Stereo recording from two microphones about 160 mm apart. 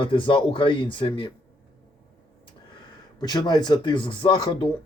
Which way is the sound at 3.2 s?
25° left (ahead or behind).